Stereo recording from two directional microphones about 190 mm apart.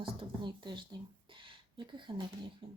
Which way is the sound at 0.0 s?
25° right (ahead or behind).